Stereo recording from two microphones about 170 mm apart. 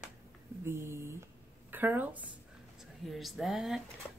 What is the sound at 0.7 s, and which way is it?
A woman's voice, 15° right (ahead or behind).